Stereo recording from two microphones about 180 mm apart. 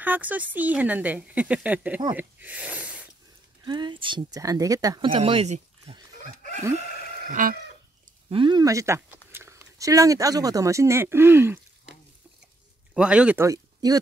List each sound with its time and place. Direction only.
0.0 s speech: 10° right (ahead or behind)
3.6 s speech: 25° right (ahead or behind)
7.2 s chicken: 45° right (ahead or behind)
8.3 s speech: 25° right (ahead or behind)